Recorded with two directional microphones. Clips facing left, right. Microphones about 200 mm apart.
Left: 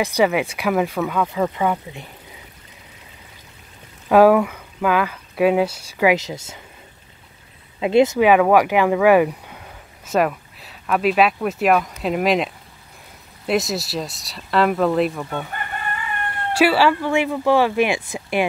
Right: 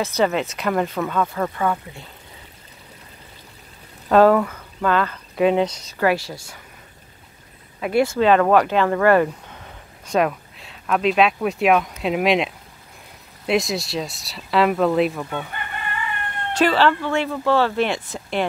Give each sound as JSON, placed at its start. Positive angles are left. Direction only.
{"t": 0.0, "sound": "speech", "side_deg": 10}
{"t": 4.1, "sound": "speech", "side_deg": 10}
{"t": 7.8, "sound": "speech", "side_deg": 20}
{"t": 15.5, "sound": "chicken", "side_deg": 45}
{"t": 16.5, "sound": "speech", "side_deg": 10}